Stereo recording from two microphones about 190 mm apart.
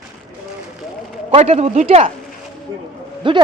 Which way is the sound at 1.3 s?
35° right (ahead or behind).